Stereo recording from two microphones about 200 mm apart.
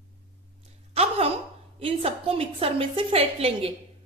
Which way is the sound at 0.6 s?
30° right (ahead or behind).